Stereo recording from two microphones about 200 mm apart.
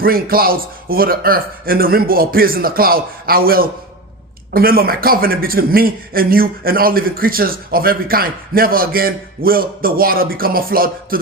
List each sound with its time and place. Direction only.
0.0 s a man's voice: 45° right (ahead or behind)